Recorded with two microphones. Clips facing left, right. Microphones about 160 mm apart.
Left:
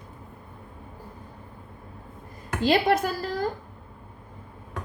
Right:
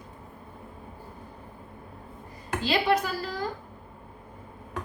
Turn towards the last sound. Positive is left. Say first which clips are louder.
# left 4 dB
turn(degrees=45)  # may be behind; listen again after turning